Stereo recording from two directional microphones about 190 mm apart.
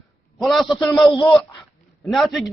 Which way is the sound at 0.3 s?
Centre (ahead or behind).